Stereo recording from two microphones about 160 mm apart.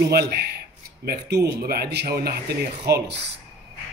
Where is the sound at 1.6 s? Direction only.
80° right.